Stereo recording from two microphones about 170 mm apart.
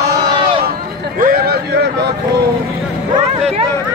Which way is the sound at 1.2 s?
65° right (ahead or behind).